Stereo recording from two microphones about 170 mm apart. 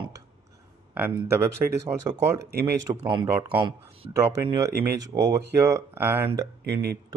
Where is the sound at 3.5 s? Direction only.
25° right (ahead or behind).